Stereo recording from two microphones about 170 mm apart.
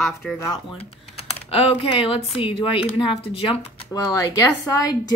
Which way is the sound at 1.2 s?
35° left (ahead or behind).